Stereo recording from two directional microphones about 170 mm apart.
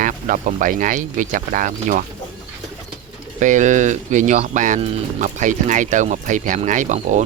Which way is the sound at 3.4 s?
45° right (ahead or behind).